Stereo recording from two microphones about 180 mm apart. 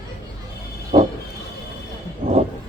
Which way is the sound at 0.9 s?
40° right (ahead or behind).